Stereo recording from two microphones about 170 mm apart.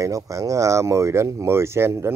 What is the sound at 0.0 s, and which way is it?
Speech, 20° right (ahead or behind).